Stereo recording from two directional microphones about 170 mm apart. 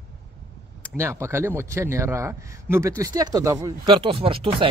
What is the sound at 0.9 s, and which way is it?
A man's voice, 15° right (ahead or behind).